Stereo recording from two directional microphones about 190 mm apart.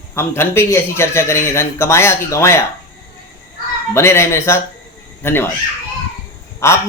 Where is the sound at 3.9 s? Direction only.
15° left (ahead or behind).